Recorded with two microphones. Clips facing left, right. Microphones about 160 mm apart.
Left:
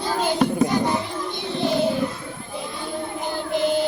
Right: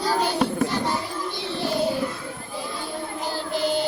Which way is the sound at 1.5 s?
20° left (ahead or behind).